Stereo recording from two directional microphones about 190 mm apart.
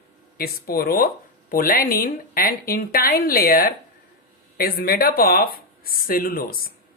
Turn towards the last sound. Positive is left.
turn(degrees=50)  # may be behind; listen again after turning